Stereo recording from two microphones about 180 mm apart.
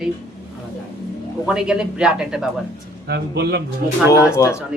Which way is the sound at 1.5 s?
5° right (ahead or behind).